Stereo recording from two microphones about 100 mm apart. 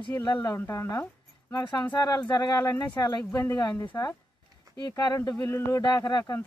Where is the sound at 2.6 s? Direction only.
25° left (ahead or behind).